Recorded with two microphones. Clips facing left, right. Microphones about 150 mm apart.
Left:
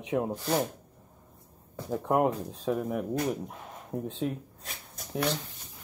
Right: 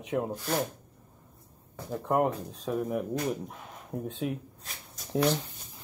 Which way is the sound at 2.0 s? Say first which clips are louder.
Left 1 dB; 5° left (ahead or behind).